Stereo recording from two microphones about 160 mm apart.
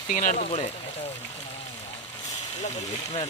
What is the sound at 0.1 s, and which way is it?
Speech, 50° left (ahead or behind).